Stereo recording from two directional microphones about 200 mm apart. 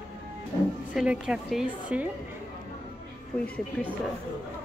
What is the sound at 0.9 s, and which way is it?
A woman's voice, 5° right (ahead or behind).